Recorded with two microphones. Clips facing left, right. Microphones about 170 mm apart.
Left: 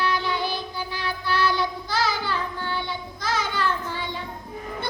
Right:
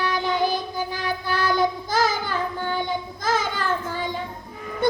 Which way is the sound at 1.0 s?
45° right (ahead or behind).